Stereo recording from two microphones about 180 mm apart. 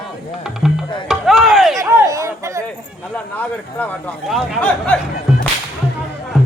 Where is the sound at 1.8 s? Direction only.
15° right (ahead or behind).